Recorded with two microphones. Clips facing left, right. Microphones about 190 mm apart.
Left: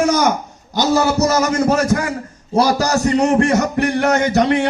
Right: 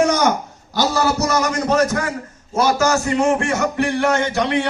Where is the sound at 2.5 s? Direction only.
35° left (ahead or behind).